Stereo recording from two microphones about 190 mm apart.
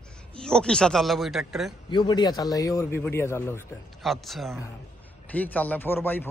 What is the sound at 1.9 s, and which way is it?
Speech, 25° left (ahead or behind).